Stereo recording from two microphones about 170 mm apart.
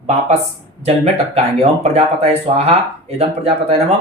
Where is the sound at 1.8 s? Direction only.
35° right (ahead or behind).